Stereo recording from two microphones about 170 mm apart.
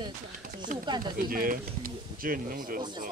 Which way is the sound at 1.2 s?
55° right (ahead or behind).